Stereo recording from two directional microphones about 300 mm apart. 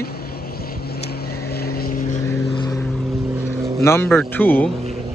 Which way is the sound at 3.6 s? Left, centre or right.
Centre.